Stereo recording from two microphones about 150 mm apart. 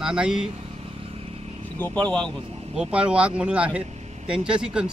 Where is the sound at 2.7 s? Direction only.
5° right (ahead or behind).